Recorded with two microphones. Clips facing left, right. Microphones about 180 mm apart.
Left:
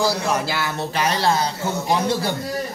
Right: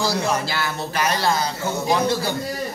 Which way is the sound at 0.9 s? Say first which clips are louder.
Left 1 dB; 25° left (ahead or behind).